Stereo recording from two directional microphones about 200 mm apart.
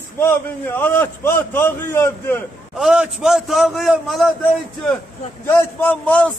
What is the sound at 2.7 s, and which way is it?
A man's voice, 5° right (ahead or behind).